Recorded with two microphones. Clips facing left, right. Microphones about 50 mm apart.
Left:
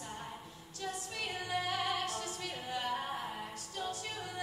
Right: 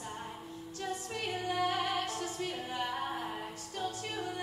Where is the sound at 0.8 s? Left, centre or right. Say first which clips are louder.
Right 2 dB; right.